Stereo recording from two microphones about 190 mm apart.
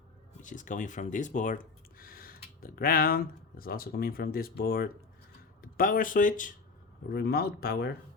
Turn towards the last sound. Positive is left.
turn(degrees=55)  # may be behind; listen again after turning